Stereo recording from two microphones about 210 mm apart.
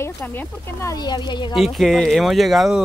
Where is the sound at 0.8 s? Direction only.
15° left (ahead or behind).